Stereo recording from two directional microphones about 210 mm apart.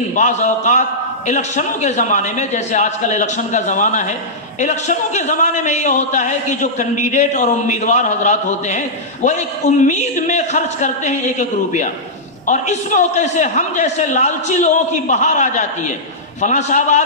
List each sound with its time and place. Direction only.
0.1 s a man's voice: 35° left (ahead or behind)